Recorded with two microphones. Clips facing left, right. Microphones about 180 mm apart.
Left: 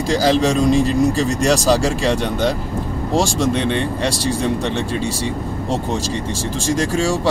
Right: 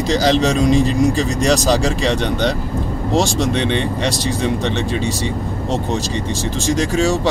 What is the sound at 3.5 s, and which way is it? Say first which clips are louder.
Speech: right 1 dB; 5° left (ahead or behind).